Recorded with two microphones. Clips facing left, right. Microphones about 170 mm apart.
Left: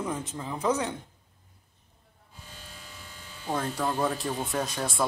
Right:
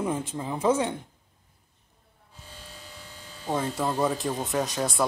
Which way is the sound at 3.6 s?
20° right (ahead or behind).